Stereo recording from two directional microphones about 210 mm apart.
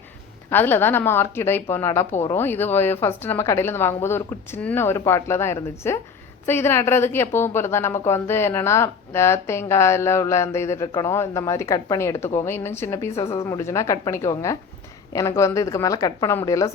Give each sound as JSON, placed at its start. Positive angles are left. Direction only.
{"t": 0.5, "sound": "a woman's voice", "side_deg": 10}